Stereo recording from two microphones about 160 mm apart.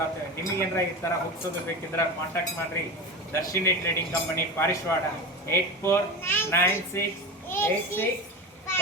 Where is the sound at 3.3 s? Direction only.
15° left (ahead or behind).